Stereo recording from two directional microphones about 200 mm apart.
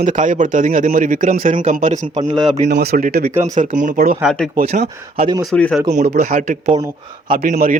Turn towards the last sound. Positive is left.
turn(degrees=-40)  # may be behind; listen again after turning